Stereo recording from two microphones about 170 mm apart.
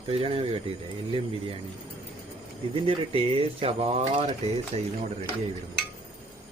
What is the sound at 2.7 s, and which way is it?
Speech, 30° right (ahead or behind).